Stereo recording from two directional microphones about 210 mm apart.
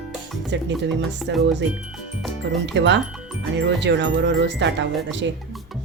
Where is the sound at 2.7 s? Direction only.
55° right (ahead or behind).